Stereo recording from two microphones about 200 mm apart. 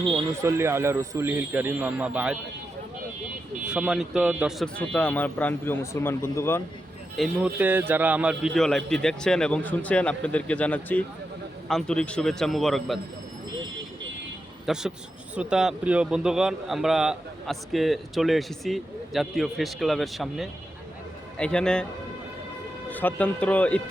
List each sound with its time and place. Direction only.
0.4 s a man's voice: 15° right (ahead or behind)
3.7 s speech: 5° right (ahead or behind); by 6.6 s 10° left (ahead or behind)
7.2 s a man's voice: 10° right (ahead or behind)
14.7 s a man's voice: 5° right (ahead or behind)
22.9 s speech: 10° left (ahead or behind)